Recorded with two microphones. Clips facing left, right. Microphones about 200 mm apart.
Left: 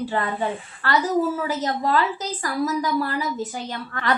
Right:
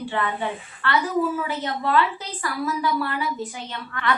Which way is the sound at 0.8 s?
40° left (ahead or behind).